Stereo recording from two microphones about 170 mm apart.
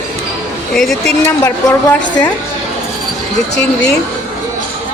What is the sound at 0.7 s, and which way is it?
Speech, centre (ahead or behind).